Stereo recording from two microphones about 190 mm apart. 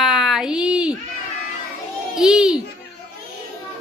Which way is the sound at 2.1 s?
Centre (ahead or behind).